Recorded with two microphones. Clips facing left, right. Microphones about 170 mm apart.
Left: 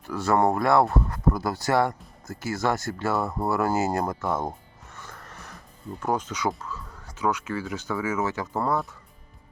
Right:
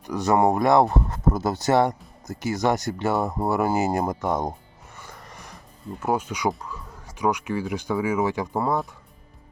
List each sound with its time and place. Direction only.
0.1 s speech: 15° right (ahead or behind)
4.9 s a sound: 15° right (ahead or behind)
6.0 s speech: 10° right (ahead or behind)